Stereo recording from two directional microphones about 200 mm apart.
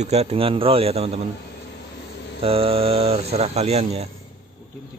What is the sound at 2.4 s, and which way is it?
Speech, 30° right (ahead or behind).